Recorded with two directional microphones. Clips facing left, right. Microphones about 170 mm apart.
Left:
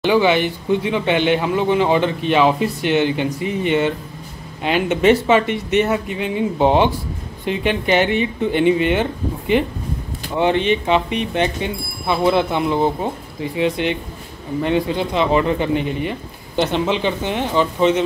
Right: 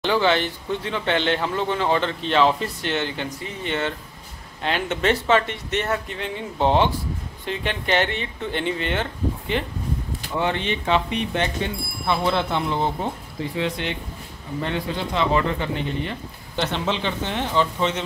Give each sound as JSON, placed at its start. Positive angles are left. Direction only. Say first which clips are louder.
{"t": 0.0, "sound": "speech", "louder": "left 5 dB", "side_deg": 10}